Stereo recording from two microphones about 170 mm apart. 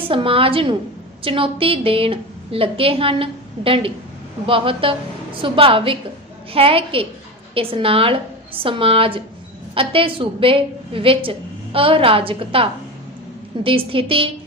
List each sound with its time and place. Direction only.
0.1 s a woman's voice: 30° right (ahead or behind)
13.7 s a woman's voice: 30° right (ahead or behind)